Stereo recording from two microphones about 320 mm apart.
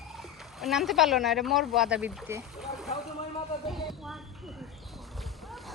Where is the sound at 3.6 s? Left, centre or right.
Centre.